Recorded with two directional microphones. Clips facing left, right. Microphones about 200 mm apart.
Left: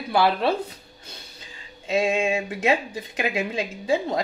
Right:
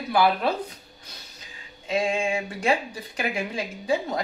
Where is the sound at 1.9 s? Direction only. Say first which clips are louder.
Left 3 dB; 25° left (ahead or behind).